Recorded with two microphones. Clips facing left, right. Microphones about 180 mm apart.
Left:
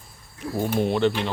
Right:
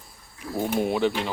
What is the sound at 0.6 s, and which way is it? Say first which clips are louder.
Speech: left 2 dB; 10° right (ahead or behind).